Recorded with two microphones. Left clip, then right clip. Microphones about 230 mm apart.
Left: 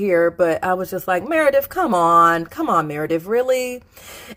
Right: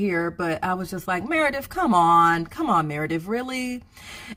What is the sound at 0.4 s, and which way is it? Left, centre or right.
Speech, centre.